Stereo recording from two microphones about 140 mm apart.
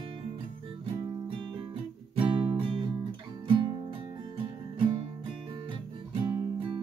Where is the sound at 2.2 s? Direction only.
35° right (ahead or behind).